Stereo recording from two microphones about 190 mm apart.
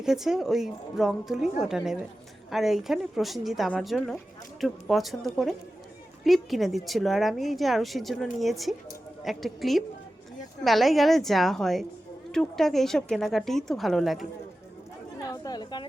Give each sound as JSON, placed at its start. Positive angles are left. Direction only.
{"t": 0.0, "sound": "a woman's voice", "side_deg": -5}
{"t": 15.2, "sound": "chatter", "side_deg": 20}